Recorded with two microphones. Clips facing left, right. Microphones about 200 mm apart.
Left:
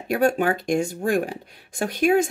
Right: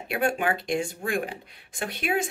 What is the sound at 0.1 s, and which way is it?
Speech, 40° left (ahead or behind).